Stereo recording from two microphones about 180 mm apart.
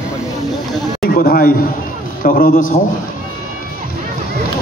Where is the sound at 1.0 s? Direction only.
55° left (ahead or behind).